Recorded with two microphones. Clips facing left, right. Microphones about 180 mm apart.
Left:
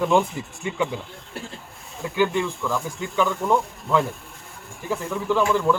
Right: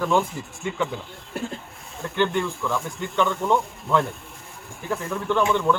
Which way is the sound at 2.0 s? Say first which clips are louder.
Left 1 dB; 5° left (ahead or behind).